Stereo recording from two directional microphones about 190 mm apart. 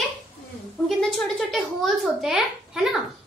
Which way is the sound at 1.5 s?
Centre (ahead or behind).